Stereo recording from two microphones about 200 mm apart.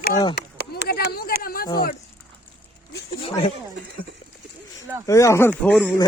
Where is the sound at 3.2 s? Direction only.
30° left (ahead or behind).